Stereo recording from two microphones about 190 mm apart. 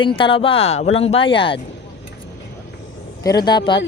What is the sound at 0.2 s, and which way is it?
Speech, 25° left (ahead or behind).